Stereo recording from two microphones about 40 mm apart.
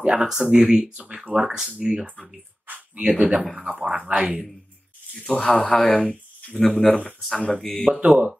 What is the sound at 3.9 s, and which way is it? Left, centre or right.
Speech, right.